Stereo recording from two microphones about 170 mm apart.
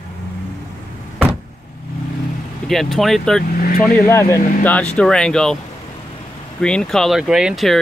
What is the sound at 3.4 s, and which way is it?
Speech, 65° left (ahead or behind).